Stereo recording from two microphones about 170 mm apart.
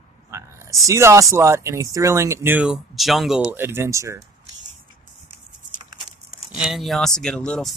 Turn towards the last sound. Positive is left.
turn(degrees=5)  # may be behind; listen again after turning